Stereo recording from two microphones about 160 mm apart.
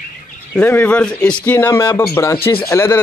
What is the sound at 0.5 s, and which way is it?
Speech, 10° left (ahead or behind).